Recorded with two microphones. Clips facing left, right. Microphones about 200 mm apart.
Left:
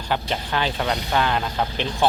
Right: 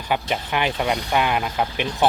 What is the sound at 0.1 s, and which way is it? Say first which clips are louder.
Speech: right 1 dB; 15° right (ahead or behind).